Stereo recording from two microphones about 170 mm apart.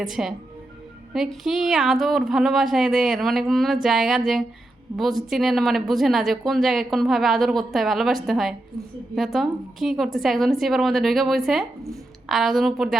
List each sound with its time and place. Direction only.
0.0 s speech: centre (ahead or behind)